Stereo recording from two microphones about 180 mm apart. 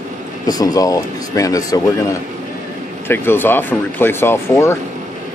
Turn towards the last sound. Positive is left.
turn(degrees=15)  # may be behind; listen again after turning